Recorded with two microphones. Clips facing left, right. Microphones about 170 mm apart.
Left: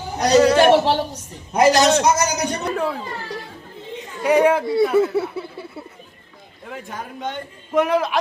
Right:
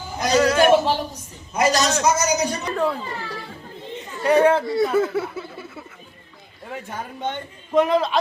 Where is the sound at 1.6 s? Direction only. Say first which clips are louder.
Left 5 dB; 60° left (ahead or behind).